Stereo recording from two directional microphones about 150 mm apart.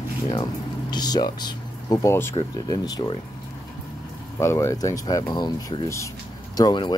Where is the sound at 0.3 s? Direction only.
30° left (ahead or behind).